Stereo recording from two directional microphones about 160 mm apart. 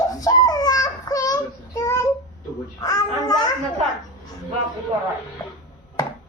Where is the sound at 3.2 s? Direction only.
25° left (ahead or behind).